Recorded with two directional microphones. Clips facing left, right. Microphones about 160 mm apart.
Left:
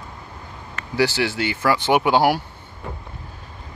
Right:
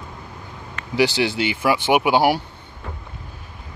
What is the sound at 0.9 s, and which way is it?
Speech, 15° right (ahead or behind).